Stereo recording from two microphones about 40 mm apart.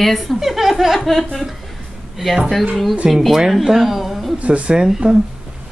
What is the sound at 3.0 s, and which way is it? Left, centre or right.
Chuckle, centre.